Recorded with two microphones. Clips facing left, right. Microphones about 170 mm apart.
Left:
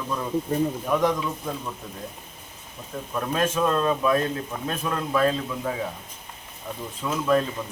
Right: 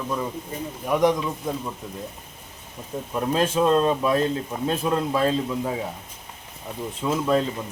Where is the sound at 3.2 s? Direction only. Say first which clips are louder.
Right 2 dB; 30° right (ahead or behind).